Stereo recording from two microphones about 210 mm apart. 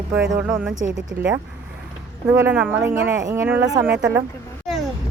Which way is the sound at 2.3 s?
10° right (ahead or behind).